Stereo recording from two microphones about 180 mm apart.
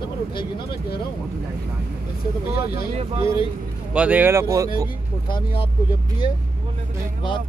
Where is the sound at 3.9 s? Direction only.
10° right (ahead or behind).